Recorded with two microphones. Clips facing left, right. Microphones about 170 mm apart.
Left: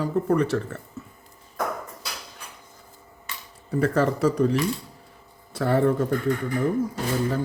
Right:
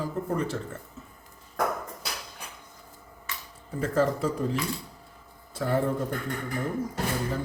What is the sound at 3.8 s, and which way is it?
Speech, 70° left (ahead or behind).